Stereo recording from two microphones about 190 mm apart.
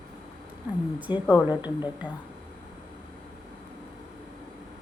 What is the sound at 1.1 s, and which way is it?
Speech, 25° left (ahead or behind).